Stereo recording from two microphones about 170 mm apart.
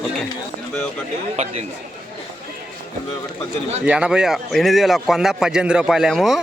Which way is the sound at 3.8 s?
5° right (ahead or behind).